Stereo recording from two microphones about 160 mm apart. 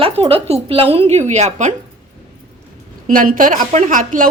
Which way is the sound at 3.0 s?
55° right (ahead or behind).